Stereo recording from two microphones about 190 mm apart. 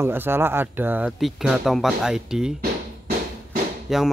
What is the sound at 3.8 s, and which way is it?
Speech, centre (ahead or behind).